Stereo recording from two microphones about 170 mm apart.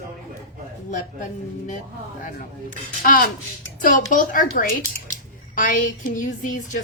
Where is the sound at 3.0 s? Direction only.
60° left (ahead or behind).